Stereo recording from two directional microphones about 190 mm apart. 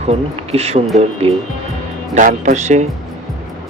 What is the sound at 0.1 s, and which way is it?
Speech, 35° right (ahead or behind).